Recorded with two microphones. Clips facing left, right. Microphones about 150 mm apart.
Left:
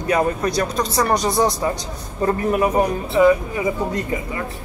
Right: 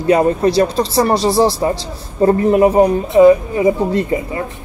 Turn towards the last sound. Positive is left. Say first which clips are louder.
# right 7 dB
turn(degrees=-30)  # may be behind; listen again after turning